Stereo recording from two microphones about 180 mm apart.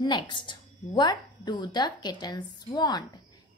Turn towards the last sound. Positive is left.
turn(degrees=25)  # may be behind; listen again after turning